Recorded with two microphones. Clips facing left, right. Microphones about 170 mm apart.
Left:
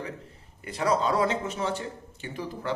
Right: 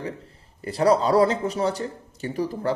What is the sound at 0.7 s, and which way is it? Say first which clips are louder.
Speech: right 6 dB; 35° right (ahead or behind).